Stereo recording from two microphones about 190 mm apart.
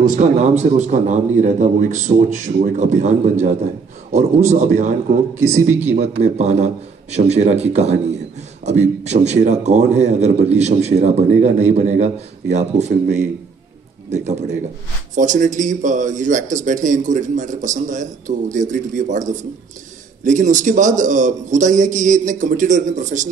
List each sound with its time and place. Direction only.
0.0 s a man's voice: 40° right (ahead or behind)
6.2 s a man's voice: 35° right (ahead or behind)
14.1 s a man's voice: 35° right (ahead or behind)